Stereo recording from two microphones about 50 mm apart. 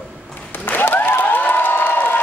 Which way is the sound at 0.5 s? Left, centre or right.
Left.